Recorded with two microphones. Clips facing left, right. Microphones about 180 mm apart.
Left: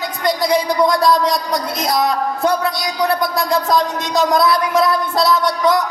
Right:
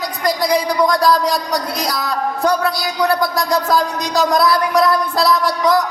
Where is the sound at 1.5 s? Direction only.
25° left (ahead or behind).